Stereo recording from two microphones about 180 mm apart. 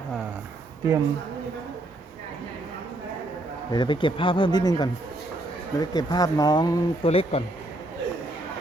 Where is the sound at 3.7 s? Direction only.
25° left (ahead or behind).